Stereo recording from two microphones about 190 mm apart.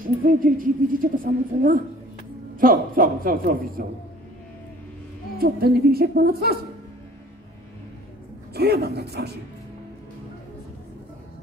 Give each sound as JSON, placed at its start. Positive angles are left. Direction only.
{"t": 0.0, "sound": "a woman's voice", "side_deg": -50}
{"t": 5.4, "sound": "a woman's voice", "side_deg": -55}
{"t": 8.5, "sound": "speech", "side_deg": -60}